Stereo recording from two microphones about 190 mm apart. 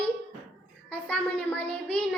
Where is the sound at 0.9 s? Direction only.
5° left (ahead or behind).